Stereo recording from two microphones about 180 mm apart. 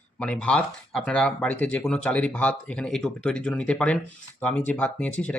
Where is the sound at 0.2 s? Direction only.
5° left (ahead or behind).